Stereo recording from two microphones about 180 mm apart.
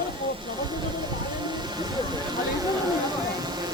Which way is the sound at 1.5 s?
25° right (ahead or behind).